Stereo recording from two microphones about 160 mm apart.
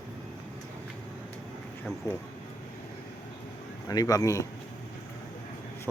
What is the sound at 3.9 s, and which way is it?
Speech, 20° left (ahead or behind).